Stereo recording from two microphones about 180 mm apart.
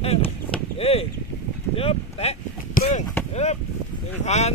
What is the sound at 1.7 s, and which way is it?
A man's voice, 35° left (ahead or behind).